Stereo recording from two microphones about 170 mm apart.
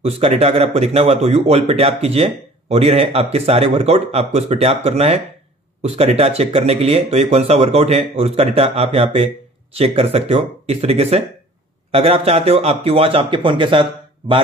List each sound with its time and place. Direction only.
0.0 s speech: 35° right (ahead or behind)